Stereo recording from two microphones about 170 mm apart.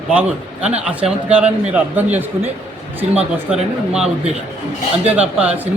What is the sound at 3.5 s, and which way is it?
A man's voice, 5° right (ahead or behind).